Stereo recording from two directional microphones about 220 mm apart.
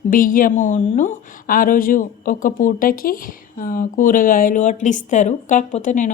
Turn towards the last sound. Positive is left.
turn(degrees=35)  # may be behind; listen again after turning